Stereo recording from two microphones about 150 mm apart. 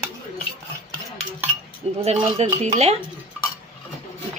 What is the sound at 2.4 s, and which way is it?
Speech, 45° right (ahead or behind).